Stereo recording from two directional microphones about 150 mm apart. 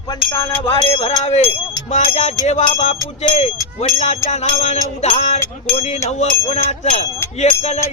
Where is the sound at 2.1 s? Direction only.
50° left (ahead or behind).